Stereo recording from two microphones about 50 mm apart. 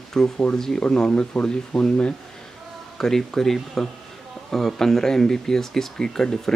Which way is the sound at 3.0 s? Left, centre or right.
Centre.